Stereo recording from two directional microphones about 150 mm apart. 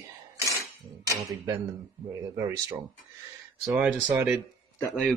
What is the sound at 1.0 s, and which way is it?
Speech, 20° right (ahead or behind).